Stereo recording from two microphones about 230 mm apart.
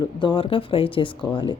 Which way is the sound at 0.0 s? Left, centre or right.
Left.